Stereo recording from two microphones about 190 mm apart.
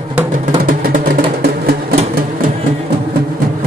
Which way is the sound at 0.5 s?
45° right (ahead or behind).